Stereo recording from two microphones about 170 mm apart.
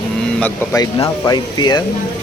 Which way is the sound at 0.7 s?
20° left (ahead or behind).